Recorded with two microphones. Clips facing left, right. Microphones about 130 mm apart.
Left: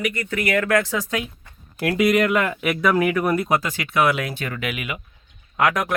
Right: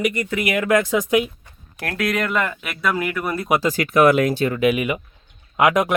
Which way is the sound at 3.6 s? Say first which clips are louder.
Right 5 dB; 45° right (ahead or behind).